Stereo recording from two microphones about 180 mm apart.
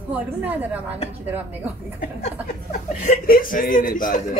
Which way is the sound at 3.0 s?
50° left (ahead or behind).